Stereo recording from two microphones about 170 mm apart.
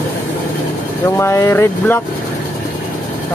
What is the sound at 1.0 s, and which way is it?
Speech, 15° left (ahead or behind).